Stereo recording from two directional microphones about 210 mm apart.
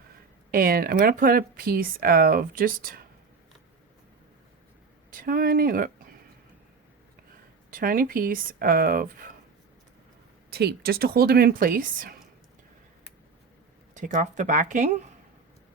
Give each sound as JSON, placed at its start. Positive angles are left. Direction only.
{"t": 0.5, "sound": "speech", "side_deg": -45}
{"t": 5.1, "sound": "speech", "side_deg": -45}
{"t": 7.7, "sound": "speech", "side_deg": -45}
{"t": 10.5, "sound": "speech", "side_deg": -50}
{"t": 13.9, "sound": "speech", "side_deg": -35}